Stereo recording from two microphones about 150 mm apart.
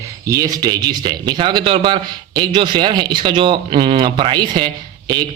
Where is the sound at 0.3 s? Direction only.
20° right (ahead or behind).